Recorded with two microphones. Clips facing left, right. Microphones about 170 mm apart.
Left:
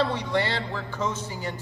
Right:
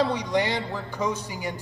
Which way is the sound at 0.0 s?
15° right (ahead or behind).